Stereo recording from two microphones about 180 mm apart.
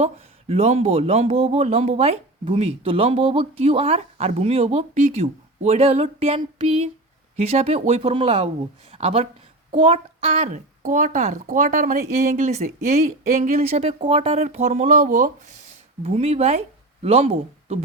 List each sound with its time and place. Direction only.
0.0 s speech: 35° right (ahead or behind)